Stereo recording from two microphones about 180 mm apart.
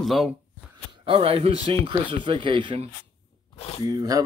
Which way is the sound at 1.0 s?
30° right (ahead or behind).